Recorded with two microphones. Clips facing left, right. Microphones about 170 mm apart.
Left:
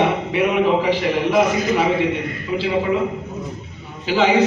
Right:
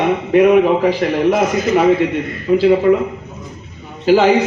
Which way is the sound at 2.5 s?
50° right (ahead or behind).